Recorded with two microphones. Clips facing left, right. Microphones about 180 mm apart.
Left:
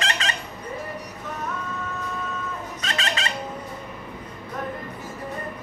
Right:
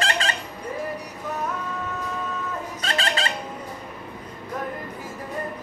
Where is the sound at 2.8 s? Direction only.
35° right (ahead or behind).